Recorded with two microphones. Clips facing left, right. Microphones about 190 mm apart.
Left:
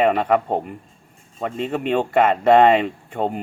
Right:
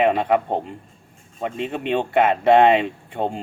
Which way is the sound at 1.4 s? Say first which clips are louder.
Left 2 dB; 15° right (ahead or behind).